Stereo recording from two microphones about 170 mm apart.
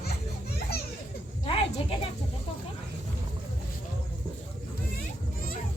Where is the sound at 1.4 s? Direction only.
35° left (ahead or behind).